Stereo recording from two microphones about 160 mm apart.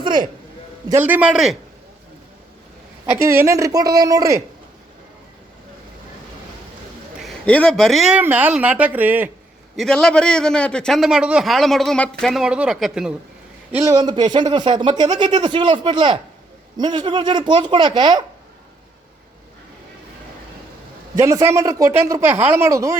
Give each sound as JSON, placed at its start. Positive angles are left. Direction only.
{"t": 0.0, "sound": "a sound", "side_deg": -25}
{"t": 0.9, "sound": "speech", "side_deg": -10}
{"t": 3.1, "sound": "speech", "side_deg": -15}
{"t": 7.2, "sound": "speech", "side_deg": 5}
{"t": 9.7, "sound": "a man's voice", "side_deg": 5}
{"t": 13.7, "sound": "speech", "side_deg": -20}
{"t": 21.2, "sound": "speech", "side_deg": -20}